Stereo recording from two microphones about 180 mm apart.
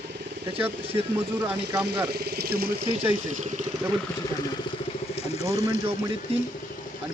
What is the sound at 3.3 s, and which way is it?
Speech, 40° right (ahead or behind).